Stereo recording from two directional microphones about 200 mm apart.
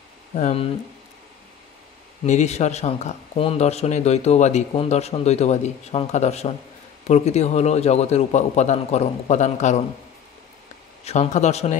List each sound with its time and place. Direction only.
0.3 s speech: 30° left (ahead or behind)
2.2 s speech: 35° left (ahead or behind)
11.1 s speech: 35° left (ahead or behind)